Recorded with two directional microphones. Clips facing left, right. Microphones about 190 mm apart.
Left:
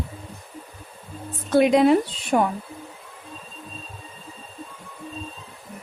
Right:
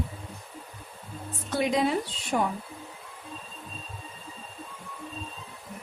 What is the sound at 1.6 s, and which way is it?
Speech, 65° left (ahead or behind).